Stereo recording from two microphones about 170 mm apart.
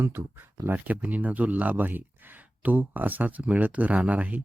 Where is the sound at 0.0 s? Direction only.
15° right (ahead or behind).